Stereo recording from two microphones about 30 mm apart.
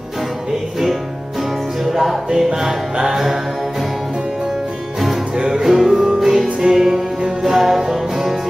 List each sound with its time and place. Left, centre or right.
2.3 s music: centre
5.4 s music: right
5.7 s music: centre